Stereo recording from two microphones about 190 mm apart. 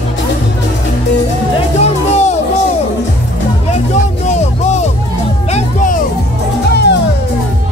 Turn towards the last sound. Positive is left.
turn(degrees=60)  # may be behind; listen again after turning